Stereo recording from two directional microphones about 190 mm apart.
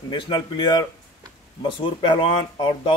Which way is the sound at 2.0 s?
25° left (ahead or behind).